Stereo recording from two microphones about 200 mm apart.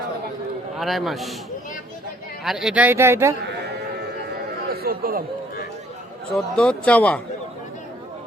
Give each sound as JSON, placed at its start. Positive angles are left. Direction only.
{"t": 0.8, "sound": "a man's voice", "side_deg": 0}
{"t": 2.4, "sound": "speech", "side_deg": 0}
{"t": 4.7, "sound": "a man's voice", "side_deg": -50}
{"t": 6.3, "sound": "speech", "side_deg": 5}